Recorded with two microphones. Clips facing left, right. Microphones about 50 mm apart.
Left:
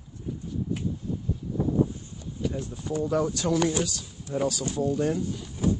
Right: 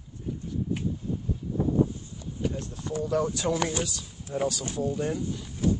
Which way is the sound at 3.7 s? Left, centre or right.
Centre.